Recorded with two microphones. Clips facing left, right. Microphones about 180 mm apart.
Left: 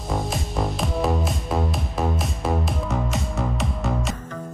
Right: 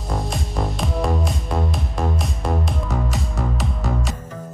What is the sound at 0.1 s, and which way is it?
Music, centre (ahead or behind).